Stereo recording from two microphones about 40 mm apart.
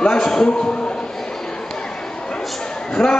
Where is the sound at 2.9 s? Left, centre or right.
Left.